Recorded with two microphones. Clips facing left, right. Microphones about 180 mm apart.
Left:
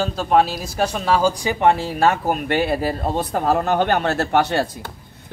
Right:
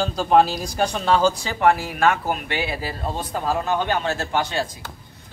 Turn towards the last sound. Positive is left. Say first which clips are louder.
# left 5 dB
turn(degrees=65)  # may be behind; listen again after turning